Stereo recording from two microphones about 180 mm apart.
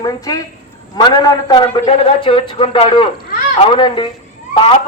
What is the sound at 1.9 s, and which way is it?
Speech, 30° left (ahead or behind).